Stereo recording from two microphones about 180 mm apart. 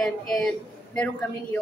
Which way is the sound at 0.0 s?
Centre (ahead or behind).